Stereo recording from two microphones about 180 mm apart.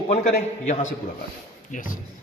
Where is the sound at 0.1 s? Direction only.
40° left (ahead or behind).